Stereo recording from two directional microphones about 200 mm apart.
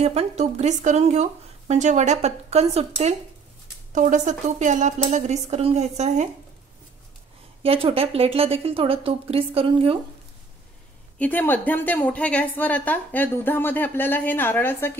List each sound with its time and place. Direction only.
0.0 s speech: 30° right (ahead or behind)
7.6 s a woman's voice: 30° right (ahead or behind)
11.1 s a woman's voice: 10° left (ahead or behind)